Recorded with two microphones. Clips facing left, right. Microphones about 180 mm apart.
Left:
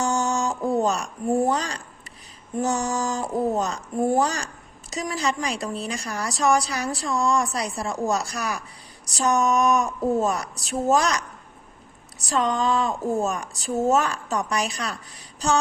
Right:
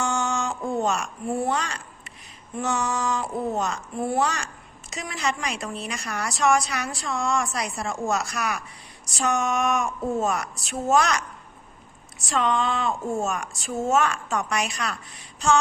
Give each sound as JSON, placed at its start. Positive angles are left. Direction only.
{"t": 0.0, "sound": "a woman's voice", "side_deg": 40}